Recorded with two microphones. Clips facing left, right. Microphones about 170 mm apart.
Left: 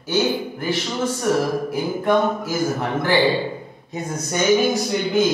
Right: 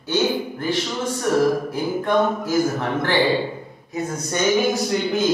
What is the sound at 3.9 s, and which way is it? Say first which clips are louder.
Speech: right 3 dB; 20° left (ahead or behind).